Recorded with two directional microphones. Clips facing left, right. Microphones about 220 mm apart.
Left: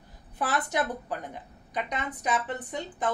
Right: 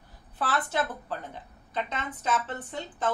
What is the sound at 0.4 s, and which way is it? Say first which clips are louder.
A woman's voice: left 1 dB; 15° left (ahead or behind).